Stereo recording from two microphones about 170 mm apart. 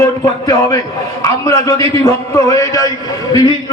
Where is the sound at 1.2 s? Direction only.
20° left (ahead or behind).